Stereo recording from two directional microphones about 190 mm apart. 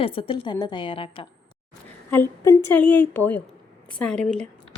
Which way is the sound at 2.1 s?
15° left (ahead or behind).